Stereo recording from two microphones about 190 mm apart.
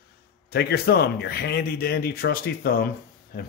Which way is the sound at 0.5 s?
55° left (ahead or behind).